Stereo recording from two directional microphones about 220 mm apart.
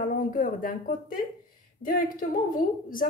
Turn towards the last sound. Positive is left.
turn(degrees=40)  # may be behind; listen again after turning